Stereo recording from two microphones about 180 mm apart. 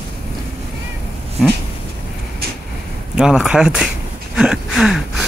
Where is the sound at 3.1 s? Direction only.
5° right (ahead or behind).